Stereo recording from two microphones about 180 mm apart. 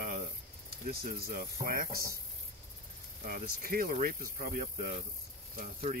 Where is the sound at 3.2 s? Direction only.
55° right (ahead or behind).